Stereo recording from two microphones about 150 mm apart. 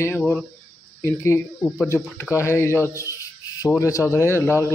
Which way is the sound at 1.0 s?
15° left (ahead or behind).